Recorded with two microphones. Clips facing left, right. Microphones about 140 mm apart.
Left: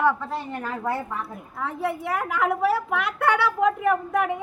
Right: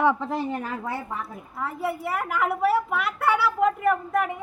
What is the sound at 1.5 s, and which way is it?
A woman's voice, 5° right (ahead or behind).